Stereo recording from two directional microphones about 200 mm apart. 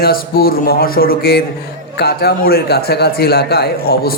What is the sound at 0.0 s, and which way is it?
A man's voice, 50° left (ahead or behind).